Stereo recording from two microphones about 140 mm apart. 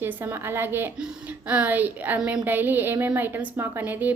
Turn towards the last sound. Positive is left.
turn(degrees=-10)  # may be behind; listen again after turning